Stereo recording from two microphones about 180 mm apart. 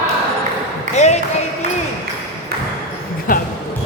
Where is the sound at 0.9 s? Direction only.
40° left (ahead or behind).